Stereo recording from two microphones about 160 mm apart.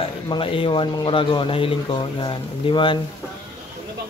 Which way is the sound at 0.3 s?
35° left (ahead or behind).